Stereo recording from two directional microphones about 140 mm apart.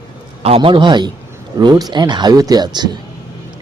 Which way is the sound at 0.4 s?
40° right (ahead or behind).